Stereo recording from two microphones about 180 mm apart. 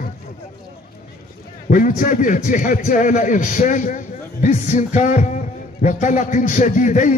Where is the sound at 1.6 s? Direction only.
45° left (ahead or behind).